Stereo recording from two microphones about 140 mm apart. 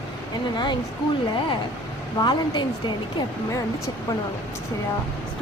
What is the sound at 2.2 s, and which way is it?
Speech, 30° left (ahead or behind).